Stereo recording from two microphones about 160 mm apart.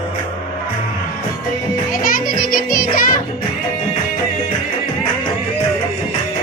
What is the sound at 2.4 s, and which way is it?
Music, 65° left (ahead or behind).